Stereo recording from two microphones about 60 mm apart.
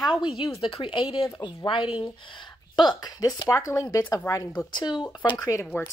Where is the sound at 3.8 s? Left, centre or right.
Left.